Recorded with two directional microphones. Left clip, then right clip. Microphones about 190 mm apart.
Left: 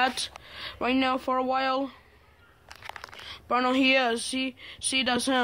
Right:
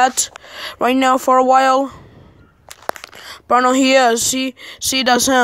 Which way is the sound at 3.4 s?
25° right (ahead or behind).